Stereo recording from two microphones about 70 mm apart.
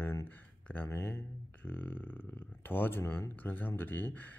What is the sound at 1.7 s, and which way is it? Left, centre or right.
Speech, left.